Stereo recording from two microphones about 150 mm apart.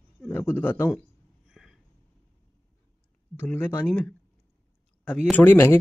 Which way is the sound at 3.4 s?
15° left (ahead or behind).